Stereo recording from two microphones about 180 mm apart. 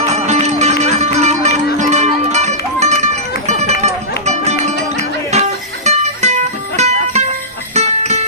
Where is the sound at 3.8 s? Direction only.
40° right (ahead or behind).